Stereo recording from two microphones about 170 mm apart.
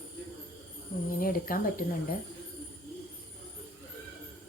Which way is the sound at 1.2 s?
55° left (ahead or behind).